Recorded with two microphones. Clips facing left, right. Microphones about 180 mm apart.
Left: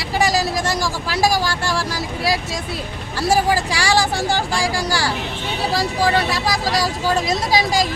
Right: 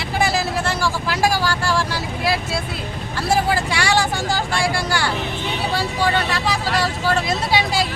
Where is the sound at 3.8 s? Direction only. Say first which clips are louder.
Left 2 dB; 35° left (ahead or behind).